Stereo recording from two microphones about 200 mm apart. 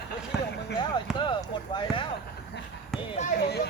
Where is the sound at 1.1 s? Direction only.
25° left (ahead or behind).